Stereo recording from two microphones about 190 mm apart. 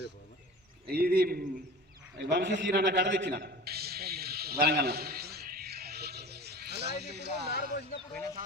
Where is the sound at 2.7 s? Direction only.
50° right (ahead or behind).